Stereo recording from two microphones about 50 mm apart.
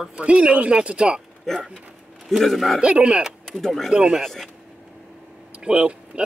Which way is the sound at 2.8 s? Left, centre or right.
Centre.